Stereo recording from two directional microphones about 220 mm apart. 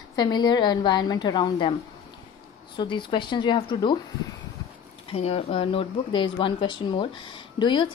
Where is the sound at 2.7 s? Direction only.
20° left (ahead or behind).